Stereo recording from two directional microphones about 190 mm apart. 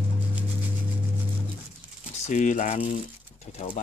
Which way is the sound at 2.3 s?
40° left (ahead or behind).